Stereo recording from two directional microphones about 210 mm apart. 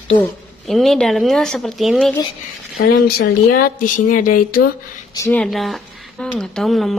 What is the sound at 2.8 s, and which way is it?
Speech, 45° left (ahead or behind).